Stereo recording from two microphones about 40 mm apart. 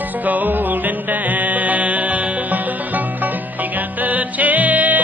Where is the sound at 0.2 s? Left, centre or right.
Right.